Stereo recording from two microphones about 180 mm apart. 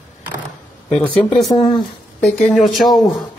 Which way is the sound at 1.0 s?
10° left (ahead or behind).